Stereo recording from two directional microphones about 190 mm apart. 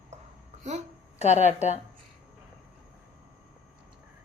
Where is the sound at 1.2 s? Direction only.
40° left (ahead or behind).